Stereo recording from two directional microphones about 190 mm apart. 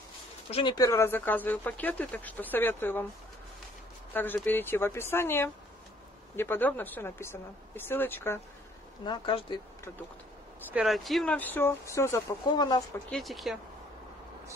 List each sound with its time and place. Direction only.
0.5 s speech: 30° left (ahead or behind)
0.7 s speech: 15° left (ahead or behind)
4.1 s speech: 10° left (ahead or behind)
9.0 s speech: 25° left (ahead or behind)
10.7 s speech: centre (ahead or behind); by 12.8 s 20° left (ahead or behind)
13.1 s speech: centre (ahead or behind)